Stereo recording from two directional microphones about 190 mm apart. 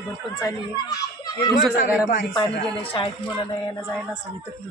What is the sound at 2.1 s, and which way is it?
Speech, 45° left (ahead or behind).